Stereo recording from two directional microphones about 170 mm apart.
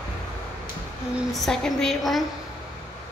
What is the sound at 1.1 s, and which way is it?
A woman's voice, centre (ahead or behind).